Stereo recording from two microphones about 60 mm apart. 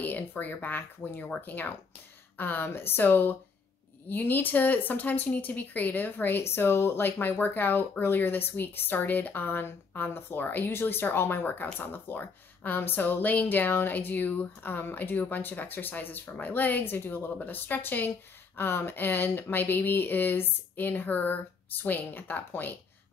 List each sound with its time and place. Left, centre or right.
0.0 s speech: left